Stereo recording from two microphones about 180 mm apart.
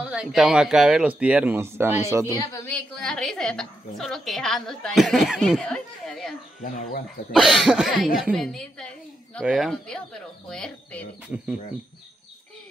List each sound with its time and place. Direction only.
0.0 s speech: 5° right (ahead or behind)
2.5 s a woman's voice: 10° left (ahead or behind)
6.6 s speech: 50° left (ahead or behind)
7.3 s a woman's voice: centre (ahead or behind)